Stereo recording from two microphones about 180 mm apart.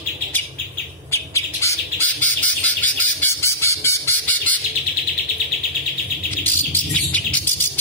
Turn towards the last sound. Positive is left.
turn(degrees=10)  # may be behind; listen again after turning